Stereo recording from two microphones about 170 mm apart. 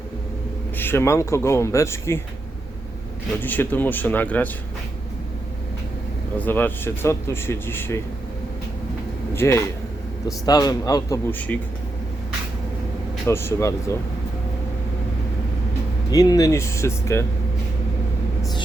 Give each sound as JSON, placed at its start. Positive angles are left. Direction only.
{"t": 0.8, "sound": "speech", "side_deg": 15}
{"t": 3.4, "sound": "speech", "side_deg": 10}
{"t": 6.3, "sound": "speech", "side_deg": 10}
{"t": 9.3, "sound": "speech", "side_deg": 15}
{"t": 13.2, "sound": "speech", "side_deg": 15}
{"t": 16.1, "sound": "speech", "side_deg": 20}